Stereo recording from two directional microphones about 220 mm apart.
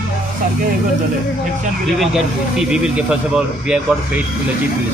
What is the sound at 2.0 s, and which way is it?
Speech, centre (ahead or behind).